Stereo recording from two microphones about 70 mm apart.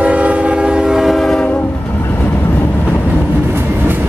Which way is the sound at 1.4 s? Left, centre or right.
Left.